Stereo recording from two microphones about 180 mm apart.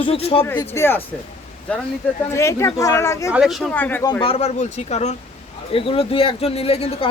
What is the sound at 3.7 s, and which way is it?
Speech, 10° left (ahead or behind).